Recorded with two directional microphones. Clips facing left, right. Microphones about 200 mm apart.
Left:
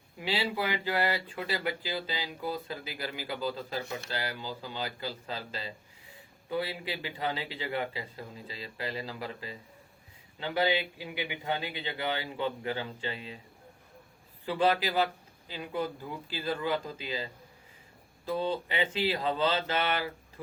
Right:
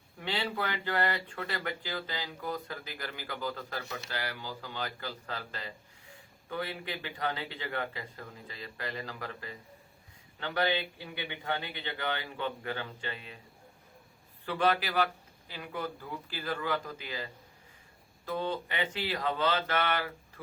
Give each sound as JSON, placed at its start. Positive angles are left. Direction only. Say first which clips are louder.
{"t": 0.2, "sound": "speech", "louder": "left 3 dB", "side_deg": 15}
{"t": 14.4, "sound": "speech", "louder": "left 2 dB", "side_deg": 15}
{"t": 18.3, "sound": "speech", "louder": "left 3 dB", "side_deg": 15}